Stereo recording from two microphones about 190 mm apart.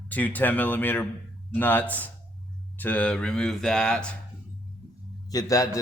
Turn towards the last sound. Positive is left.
turn(degrees=20)  # may be behind; listen again after turning